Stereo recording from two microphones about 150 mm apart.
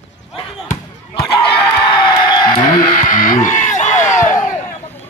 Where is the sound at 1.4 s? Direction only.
30° left (ahead or behind).